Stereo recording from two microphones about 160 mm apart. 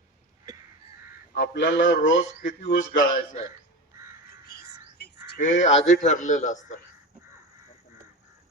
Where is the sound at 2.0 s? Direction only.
55° left (ahead or behind).